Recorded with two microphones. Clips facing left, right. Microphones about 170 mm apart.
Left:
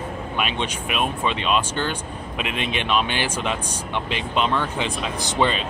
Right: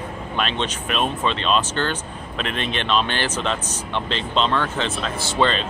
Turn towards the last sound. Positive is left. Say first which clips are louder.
# right 1 dB
turn(degrees=10)  # may be behind; listen again after turning